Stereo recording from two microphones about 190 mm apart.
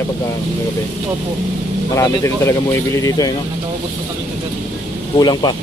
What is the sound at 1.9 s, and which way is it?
Speech, 15° left (ahead or behind).